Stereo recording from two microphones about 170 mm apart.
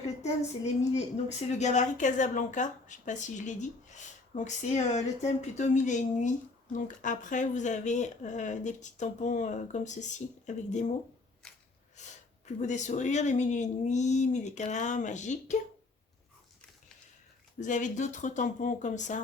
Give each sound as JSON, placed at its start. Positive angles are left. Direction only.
{"t": 0.2, "sound": "speech", "side_deg": 40}
{"t": 12.0, "sound": "a sound", "side_deg": 45}
{"t": 12.5, "sound": "speech", "side_deg": 45}
{"t": 17.6, "sound": "speech", "side_deg": 45}